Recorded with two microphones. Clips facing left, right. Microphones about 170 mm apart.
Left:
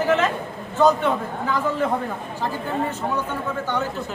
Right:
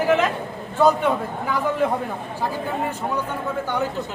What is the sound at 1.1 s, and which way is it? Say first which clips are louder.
Speech: right 1 dB; 10° right (ahead or behind).